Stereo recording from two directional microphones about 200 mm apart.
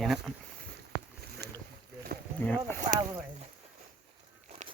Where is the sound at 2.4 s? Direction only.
10° left (ahead or behind).